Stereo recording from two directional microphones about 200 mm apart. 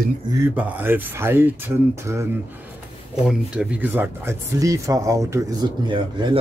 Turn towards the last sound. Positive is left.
turn(degrees=-25)  # may be behind; listen again after turning